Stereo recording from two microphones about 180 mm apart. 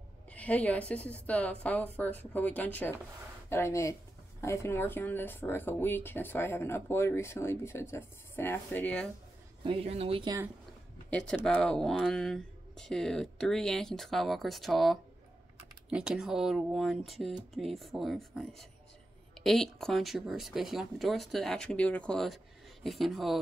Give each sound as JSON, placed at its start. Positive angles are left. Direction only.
{"t": 0.3, "sound": "speech", "side_deg": 10}
{"t": 9.6, "sound": "speech", "side_deg": -30}
{"t": 11.1, "sound": "speech", "side_deg": 5}